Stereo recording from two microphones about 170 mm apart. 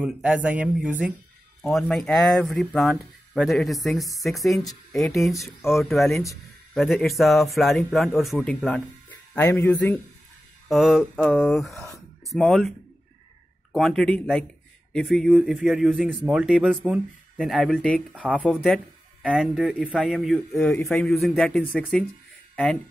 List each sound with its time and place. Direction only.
0.0 s speech: 5° right (ahead or behind); by 9.9 s 15° left (ahead or behind)
10.7 s speech: centre (ahead or behind)